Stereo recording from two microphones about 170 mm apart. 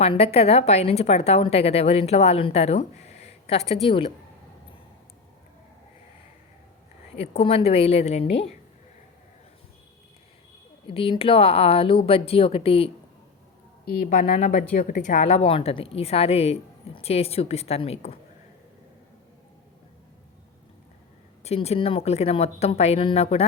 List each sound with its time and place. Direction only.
0.0 s a woman's voice: 35° left (ahead or behind)
7.2 s a woman's voice: 35° left (ahead or behind)
10.8 s a woman's voice: 30° left (ahead or behind)
14.1 s a woman's voice: 45° left (ahead or behind)
21.4 s a woman's voice: 40° left (ahead or behind)